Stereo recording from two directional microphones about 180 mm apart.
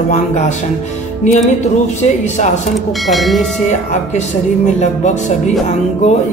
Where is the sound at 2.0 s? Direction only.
40° left (ahead or behind).